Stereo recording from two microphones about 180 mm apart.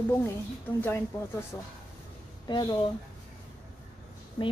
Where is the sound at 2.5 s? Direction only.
25° left (ahead or behind).